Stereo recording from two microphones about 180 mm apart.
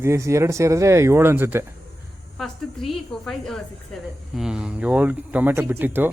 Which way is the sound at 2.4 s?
Centre (ahead or behind).